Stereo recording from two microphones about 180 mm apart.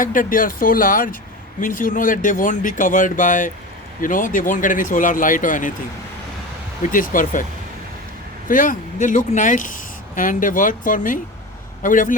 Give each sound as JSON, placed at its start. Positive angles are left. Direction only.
{"t": 0.0, "sound": "speech", "side_deg": 50}
{"t": 6.8, "sound": "speech", "side_deg": 50}
{"t": 8.4, "sound": "speech", "side_deg": 50}